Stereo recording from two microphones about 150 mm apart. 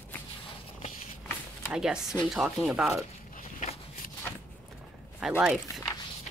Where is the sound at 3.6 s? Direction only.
60° left (ahead or behind).